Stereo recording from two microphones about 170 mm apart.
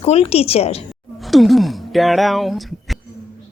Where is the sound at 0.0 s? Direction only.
35° left (ahead or behind).